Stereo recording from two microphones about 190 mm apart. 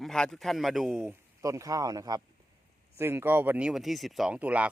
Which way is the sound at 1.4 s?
15° right (ahead or behind).